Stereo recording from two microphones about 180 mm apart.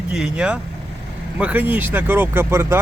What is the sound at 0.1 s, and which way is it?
Speech, 5° right (ahead or behind).